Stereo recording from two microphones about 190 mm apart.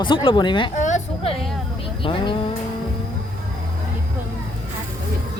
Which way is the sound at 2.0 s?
25° left (ahead or behind).